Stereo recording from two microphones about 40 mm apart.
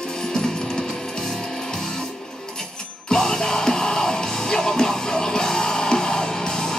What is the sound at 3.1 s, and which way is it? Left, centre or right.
Music, centre.